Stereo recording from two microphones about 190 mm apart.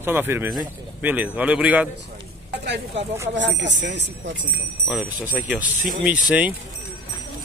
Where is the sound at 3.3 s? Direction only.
70° right (ahead or behind).